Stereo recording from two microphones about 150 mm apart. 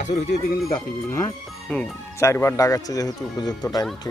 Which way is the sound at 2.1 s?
15° left (ahead or behind).